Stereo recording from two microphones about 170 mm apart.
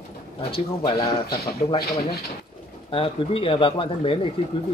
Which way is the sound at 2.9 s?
30° left (ahead or behind).